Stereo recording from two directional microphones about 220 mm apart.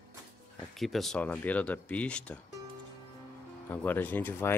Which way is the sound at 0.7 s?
Centre (ahead or behind).